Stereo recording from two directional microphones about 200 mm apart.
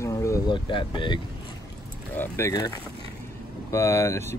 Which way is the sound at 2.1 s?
15° left (ahead or behind).